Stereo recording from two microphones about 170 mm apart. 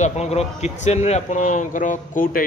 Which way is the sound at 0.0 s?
40° left (ahead or behind).